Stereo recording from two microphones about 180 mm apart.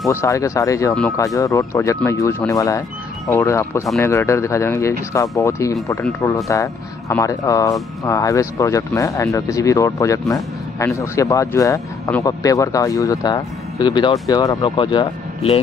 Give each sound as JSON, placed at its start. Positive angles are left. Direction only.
{"t": 0.1, "sound": "speech", "side_deg": 15}